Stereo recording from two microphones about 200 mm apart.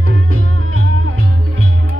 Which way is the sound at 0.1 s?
80° right.